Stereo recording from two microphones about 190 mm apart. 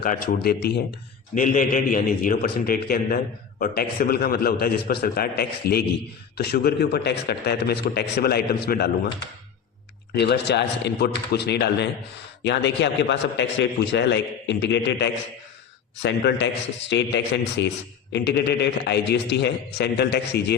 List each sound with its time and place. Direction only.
0.0 s a man's voice: 45° left (ahead or behind)
1.4 s a man's voice: 45° left (ahead or behind)
10.2 s a man's voice: 60° left (ahead or behind)